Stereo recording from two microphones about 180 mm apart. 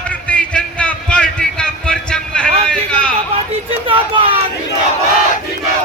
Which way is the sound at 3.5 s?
30° right (ahead or behind).